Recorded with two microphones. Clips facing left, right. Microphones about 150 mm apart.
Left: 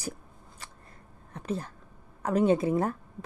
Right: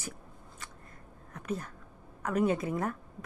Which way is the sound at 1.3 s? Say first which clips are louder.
Left 3 dB; 30° left (ahead or behind).